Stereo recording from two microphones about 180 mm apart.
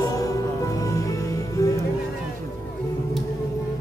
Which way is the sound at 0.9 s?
20° left (ahead or behind).